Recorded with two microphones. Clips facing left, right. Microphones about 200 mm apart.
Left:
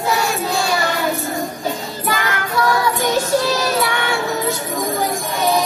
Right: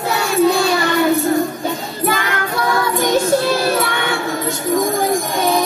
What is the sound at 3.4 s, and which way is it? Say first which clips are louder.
Music: right 2 dB; 55° right (ahead or behind).